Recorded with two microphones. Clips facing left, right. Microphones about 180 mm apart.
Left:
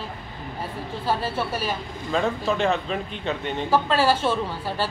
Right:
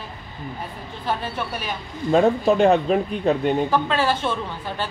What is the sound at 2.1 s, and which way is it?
A man's voice, 40° right (ahead or behind).